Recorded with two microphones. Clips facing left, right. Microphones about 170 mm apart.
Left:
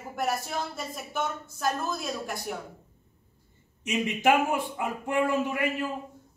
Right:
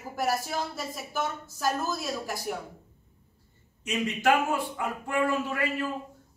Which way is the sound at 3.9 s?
20° left (ahead or behind).